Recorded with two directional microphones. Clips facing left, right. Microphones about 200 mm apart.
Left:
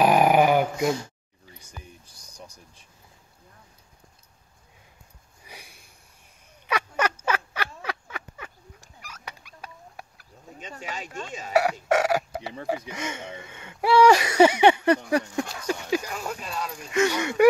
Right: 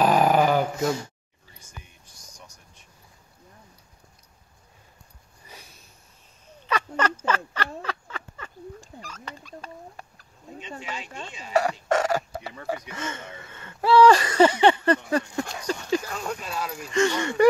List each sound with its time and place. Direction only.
0.0 s dog: 10° left (ahead or behind)
1.7 s a sound: 35° left (ahead or behind)
5.4 s sniff: 10° left (ahead or behind)
6.6 s frog: 10° left (ahead or behind)
9.0 s dog: 10° left (ahead or behind)
10.8 s speech: 45° left (ahead or behind)
11.9 s chicken: 10° left (ahead or behind)
12.6 s speech: 10° left (ahead or behind)
13.4 s a sound: 15° left (ahead or behind)